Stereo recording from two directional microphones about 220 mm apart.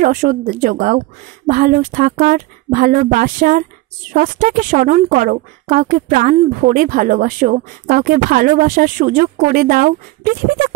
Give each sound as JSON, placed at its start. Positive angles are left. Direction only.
{"t": 0.0, "sound": "a woman's voice", "side_deg": -35}